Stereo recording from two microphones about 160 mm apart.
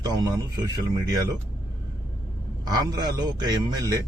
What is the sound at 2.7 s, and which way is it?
A man's voice, 25° right (ahead or behind).